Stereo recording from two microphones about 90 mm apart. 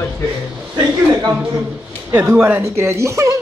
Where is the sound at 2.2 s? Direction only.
20° right (ahead or behind).